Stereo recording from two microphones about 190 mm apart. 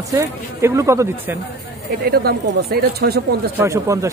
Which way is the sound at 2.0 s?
55° right (ahead or behind).